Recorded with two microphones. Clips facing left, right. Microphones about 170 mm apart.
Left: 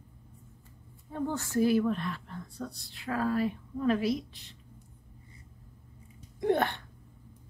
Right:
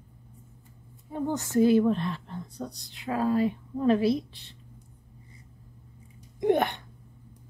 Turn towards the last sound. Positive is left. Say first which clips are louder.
# right 3 dB
turn(degrees=-20)  # may be behind; listen again after turning